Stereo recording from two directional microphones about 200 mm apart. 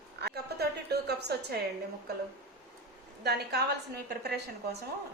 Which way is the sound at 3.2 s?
55° right (ahead or behind).